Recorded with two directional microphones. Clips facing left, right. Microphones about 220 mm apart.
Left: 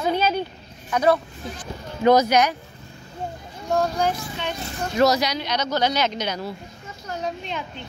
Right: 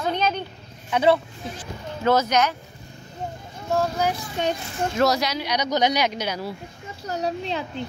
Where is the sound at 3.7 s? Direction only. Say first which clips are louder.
Left 1 dB; 5° right (ahead or behind).